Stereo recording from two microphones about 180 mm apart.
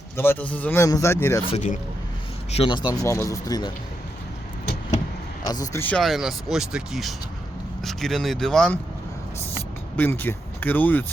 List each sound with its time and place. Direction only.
0.2 s a man's voice: 10° left (ahead or behind)
1.5 s a man's voice: 40° left (ahead or behind)
2.5 s a man's voice: 30° left (ahead or behind)
2.9 s speech: 15° left (ahead or behind)
5.5 s speech: 20° left (ahead or behind)
5.8 s speech: 5° left (ahead or behind)
10.0 s a man's voice: 10° left (ahead or behind)